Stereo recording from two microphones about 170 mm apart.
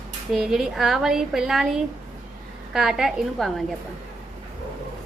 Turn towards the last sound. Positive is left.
turn(degrees=0)  # may be behind; listen again after turning